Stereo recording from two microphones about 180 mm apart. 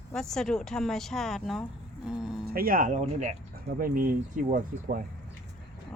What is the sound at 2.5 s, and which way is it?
Speech, 55° right (ahead or behind).